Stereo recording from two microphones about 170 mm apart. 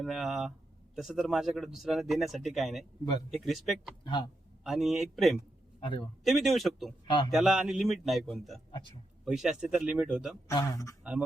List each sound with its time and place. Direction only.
0.0 s speech: centre (ahead or behind)
4.0 s a man's voice: 25° left (ahead or behind)
4.6 s speech: centre (ahead or behind)
5.8 s a man's voice: 30° left (ahead or behind)
6.2 s speech: centre (ahead or behind)
10.5 s a man's voice: 20° left (ahead or behind)